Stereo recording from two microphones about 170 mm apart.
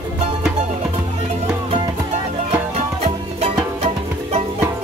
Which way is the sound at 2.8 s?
40° right (ahead or behind).